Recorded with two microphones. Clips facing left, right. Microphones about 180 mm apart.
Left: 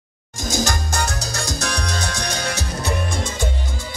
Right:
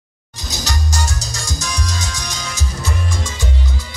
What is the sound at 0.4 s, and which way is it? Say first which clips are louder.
Salsa music: left 4 dB; 50° left (ahead or behind).